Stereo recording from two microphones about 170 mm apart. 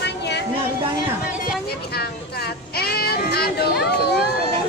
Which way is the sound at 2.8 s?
65° left (ahead or behind).